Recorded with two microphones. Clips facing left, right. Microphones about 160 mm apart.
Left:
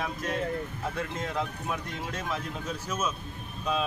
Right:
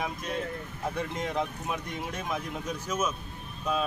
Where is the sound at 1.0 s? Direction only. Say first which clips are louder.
Right 1 dB; 15° right (ahead or behind).